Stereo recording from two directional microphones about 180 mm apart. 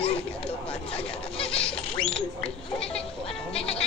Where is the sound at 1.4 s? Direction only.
30° left (ahead or behind).